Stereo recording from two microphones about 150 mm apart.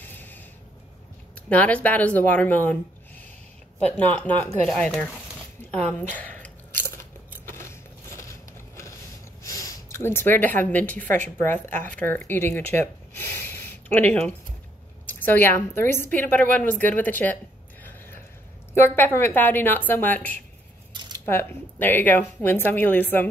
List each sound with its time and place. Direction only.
0.0 s a sound: 15° left (ahead or behind)
1.5 s a woman's voice: 10° left (ahead or behind)
7.4 s a sound: 15° left (ahead or behind)
8.2 s biting: 20° left (ahead or behind)
9.4 s a sound: 20° left (ahead or behind)
11.2 s a woman's voice: 15° left (ahead or behind)
11.7 s speech: 60° right (ahead or behind)
12.0 s a woman's voice: 10° left (ahead or behind)
18.8 s a woman's voice: 15° left (ahead or behind)